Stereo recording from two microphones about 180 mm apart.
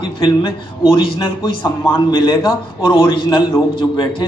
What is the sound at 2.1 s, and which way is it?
Speech, 25° left (ahead or behind).